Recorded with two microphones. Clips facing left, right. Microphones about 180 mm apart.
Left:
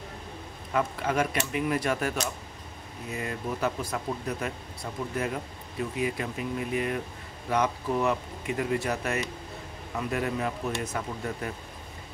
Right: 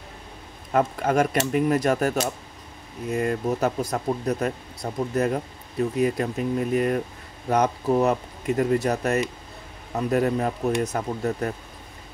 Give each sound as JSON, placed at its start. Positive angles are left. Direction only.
{"t": 0.7, "sound": "speech", "side_deg": -45}